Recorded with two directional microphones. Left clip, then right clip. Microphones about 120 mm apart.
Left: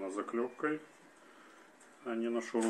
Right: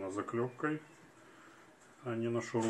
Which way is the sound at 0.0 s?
20° left (ahead or behind).